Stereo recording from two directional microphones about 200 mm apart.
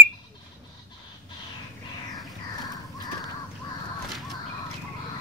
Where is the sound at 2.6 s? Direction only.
20° left (ahead or behind).